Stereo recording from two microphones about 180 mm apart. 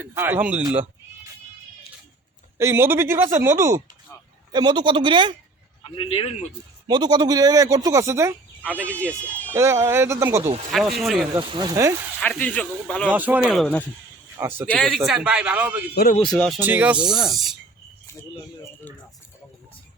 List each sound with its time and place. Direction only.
0.0 s speech: 10° right (ahead or behind)
2.6 s speech: 15° right (ahead or behind)
6.0 s speech: 30° left (ahead or behind)
6.8 s speech: 25° right (ahead or behind)
8.9 s speech: 5° left (ahead or behind)
9.5 s speech: 15° right (ahead or behind)
10.7 s speech: centre (ahead or behind)
11.3 s speech: 25° right (ahead or behind)
12.2 s speech: 10° left (ahead or behind)
13.1 s speech: 10° right (ahead or behind)
14.3 s speech: 15° right (ahead or behind)
14.7 s speech: 5° left (ahead or behind)
16.6 s speech: 10° right (ahead or behind)